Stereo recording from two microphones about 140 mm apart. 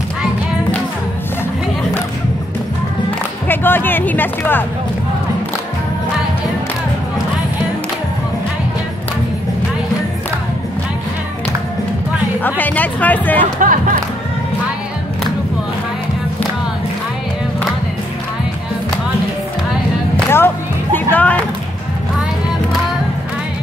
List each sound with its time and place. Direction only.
3.4 s music: 15° left (ahead or behind)
12.4 s speech: 10° left (ahead or behind)
13.6 s speech: 70° right (ahead or behind)
20.2 s music: 15° left (ahead or behind)